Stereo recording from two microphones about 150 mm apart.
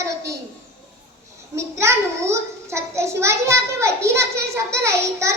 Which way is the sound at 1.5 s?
20° right (ahead or behind).